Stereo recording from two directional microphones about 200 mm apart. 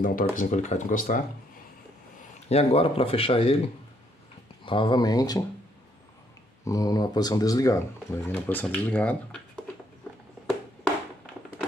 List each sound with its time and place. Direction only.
0.0 s speech: 45° left (ahead or behind)
2.4 s speech: 30° left (ahead or behind)
6.6 s speech: 15° left (ahead or behind)